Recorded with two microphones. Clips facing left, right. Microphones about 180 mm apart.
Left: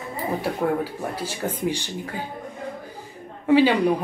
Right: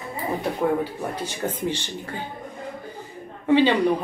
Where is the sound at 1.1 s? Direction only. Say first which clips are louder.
Even; 10° left (ahead or behind).